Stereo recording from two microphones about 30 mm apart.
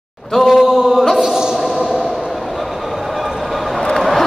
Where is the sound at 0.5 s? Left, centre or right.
Centre.